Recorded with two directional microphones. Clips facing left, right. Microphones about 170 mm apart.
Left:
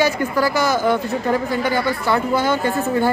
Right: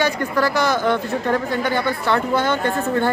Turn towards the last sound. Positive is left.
turn(degrees=5)  # may be behind; listen again after turning